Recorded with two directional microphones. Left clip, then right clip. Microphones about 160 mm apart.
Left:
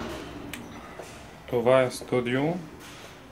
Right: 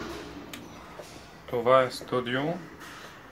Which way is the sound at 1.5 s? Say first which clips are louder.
Left 1 dB; 35° left (ahead or behind).